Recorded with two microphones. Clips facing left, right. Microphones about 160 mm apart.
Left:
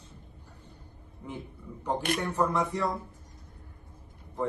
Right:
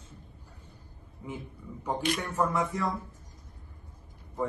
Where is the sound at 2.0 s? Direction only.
60° left (ahead or behind).